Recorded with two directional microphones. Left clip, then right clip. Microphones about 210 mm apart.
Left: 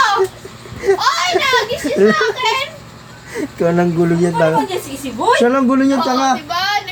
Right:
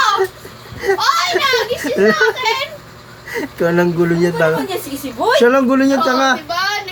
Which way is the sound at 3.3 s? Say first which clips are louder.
Even; 10° right (ahead or behind).